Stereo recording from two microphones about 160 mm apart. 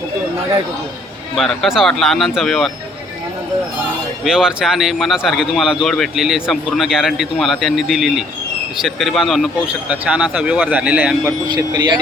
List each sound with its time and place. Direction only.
1.4 s speech: centre (ahead or behind)
4.2 s speech: 5° right (ahead or behind)
11.4 s speech: 30° right (ahead or behind)